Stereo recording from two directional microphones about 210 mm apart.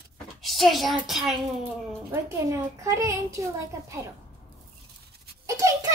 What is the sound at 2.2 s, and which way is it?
A child's voice, 15° right (ahead or behind).